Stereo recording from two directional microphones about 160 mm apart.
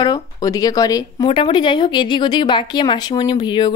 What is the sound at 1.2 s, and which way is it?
Speech, 35° left (ahead or behind).